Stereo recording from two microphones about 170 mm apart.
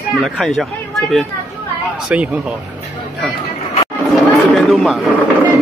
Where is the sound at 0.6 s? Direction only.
Centre (ahead or behind).